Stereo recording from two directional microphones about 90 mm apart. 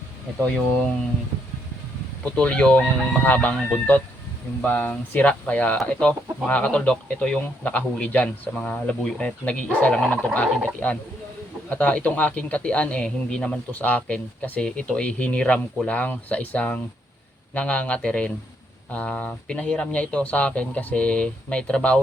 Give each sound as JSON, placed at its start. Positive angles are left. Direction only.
{"t": 2.2, "sound": "a man's voice", "side_deg": 10}